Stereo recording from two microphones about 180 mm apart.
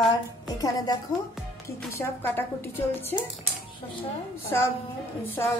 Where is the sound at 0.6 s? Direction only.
20° left (ahead or behind).